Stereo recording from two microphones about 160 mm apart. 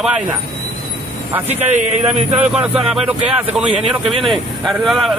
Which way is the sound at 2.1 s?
10° right (ahead or behind).